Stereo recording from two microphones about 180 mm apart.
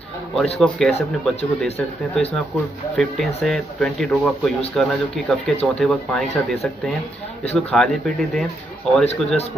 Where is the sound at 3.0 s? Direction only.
Centre (ahead or behind).